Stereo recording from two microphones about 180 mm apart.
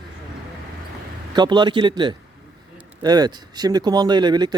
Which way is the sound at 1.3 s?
25° right (ahead or behind).